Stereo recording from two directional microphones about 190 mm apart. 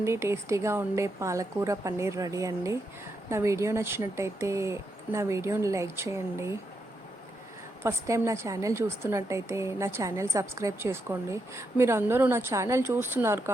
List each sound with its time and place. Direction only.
0.0 s a woman's voice: 15° right (ahead or behind)
7.9 s a woman's voice: 15° right (ahead or behind)